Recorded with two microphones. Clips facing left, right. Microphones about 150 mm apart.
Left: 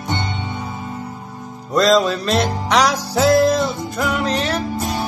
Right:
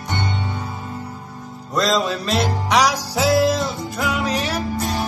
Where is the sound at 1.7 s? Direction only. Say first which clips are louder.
Left 5 dB; centre (ahead or behind).